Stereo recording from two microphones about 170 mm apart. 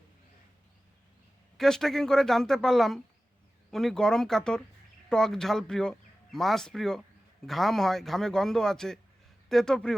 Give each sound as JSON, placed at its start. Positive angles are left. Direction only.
{"t": 1.5, "sound": "a man's voice", "side_deg": 0}